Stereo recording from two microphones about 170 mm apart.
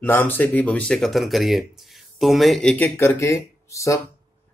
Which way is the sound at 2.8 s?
10° left (ahead or behind).